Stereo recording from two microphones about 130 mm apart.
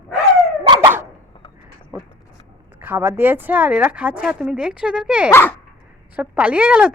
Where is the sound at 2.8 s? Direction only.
15° right (ahead or behind).